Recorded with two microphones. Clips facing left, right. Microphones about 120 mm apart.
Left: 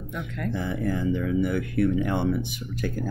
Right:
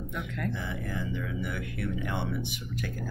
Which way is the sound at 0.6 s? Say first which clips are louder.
Left 8 dB; 45° left (ahead or behind).